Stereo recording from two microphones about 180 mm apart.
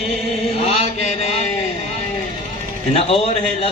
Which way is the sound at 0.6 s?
35° left (ahead or behind).